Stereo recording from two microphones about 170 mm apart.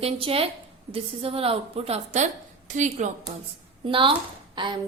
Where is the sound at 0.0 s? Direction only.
35° right (ahead or behind).